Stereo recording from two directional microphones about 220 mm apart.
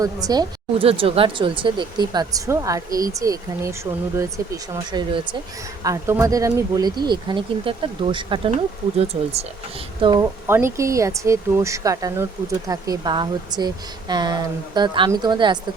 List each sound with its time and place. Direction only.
0.0 s speech: 15° right (ahead or behind)